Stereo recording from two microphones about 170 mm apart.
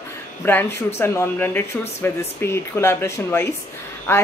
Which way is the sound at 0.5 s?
15° left (ahead or behind).